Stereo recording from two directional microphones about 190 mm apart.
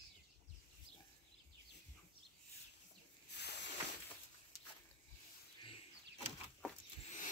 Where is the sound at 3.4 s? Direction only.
60° left (ahead or behind).